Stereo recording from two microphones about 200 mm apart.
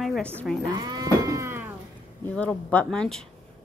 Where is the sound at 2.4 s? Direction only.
5° left (ahead or behind).